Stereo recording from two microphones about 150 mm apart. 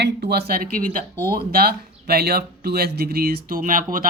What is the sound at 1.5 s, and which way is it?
Speech, 90° right.